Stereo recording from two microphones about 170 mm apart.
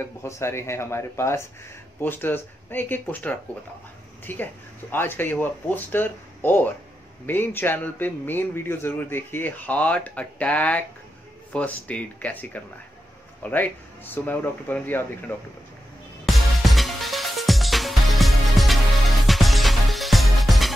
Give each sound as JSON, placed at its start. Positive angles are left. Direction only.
{"t": 0.0, "sound": "a man's voice", "side_deg": 15}
{"t": 16.3, "sound": "music", "side_deg": 0}